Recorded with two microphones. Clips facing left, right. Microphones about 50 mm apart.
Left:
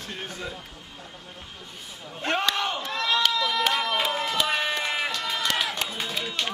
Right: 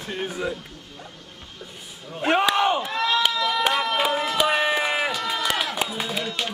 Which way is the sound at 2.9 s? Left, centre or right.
Centre.